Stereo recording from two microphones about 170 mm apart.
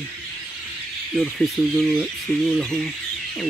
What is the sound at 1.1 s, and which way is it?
Speech, centre (ahead or behind).